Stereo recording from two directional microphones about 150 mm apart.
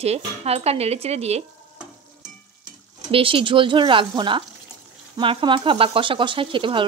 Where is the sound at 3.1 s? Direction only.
35° right (ahead or behind).